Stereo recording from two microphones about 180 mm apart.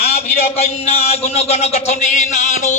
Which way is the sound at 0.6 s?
35° left (ahead or behind).